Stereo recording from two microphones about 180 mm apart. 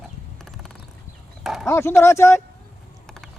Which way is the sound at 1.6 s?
15° left (ahead or behind).